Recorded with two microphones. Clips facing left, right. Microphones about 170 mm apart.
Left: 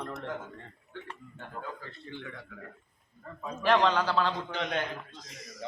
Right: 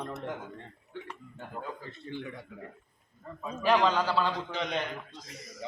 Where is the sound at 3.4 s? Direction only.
5° right (ahead or behind).